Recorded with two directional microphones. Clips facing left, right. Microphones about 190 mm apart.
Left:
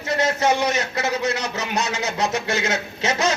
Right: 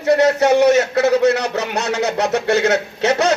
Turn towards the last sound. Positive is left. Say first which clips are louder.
# right 6 dB
turn(degrees=-65)  # may be behind; listen again after turning